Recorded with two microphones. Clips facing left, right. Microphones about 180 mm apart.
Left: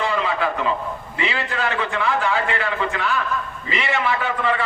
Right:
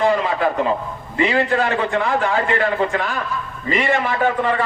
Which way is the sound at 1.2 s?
50° right (ahead or behind).